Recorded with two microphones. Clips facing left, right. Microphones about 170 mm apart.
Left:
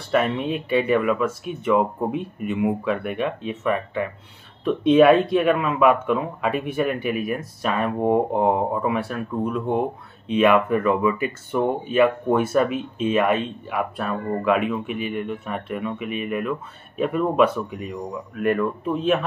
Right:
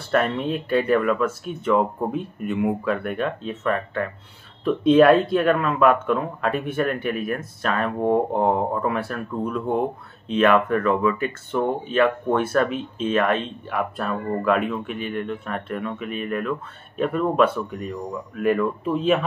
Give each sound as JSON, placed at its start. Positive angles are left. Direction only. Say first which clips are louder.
{"t": 0.0, "sound": "speech", "louder": "even", "side_deg": 5}